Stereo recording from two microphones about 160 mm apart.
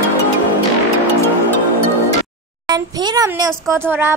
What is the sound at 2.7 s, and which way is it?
Speech, 25° right (ahead or behind).